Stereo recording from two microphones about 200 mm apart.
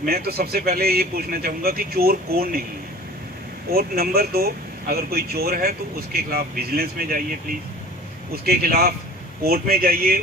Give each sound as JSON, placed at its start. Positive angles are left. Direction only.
{"t": 0.0, "sound": "speech", "side_deg": -50}
{"t": 3.7, "sound": "speech", "side_deg": -50}
{"t": 8.3, "sound": "speech", "side_deg": -50}